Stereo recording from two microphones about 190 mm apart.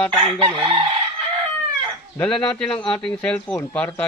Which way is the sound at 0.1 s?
25° right (ahead or behind).